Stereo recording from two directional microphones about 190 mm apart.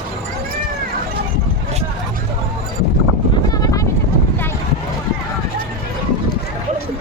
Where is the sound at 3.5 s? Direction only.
20° left (ahead or behind).